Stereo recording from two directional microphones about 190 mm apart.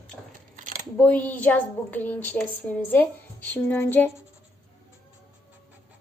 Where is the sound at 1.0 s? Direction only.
10° left (ahead or behind).